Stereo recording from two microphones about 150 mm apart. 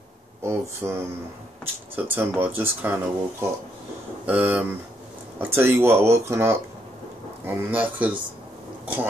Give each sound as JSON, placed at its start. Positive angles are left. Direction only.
{"t": 0.4, "sound": "speech", "side_deg": -15}